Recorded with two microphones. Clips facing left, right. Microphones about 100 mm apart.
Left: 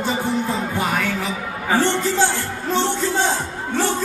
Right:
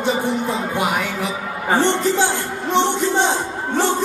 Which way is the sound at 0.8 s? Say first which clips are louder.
Right 2 dB; 15° right (ahead or behind).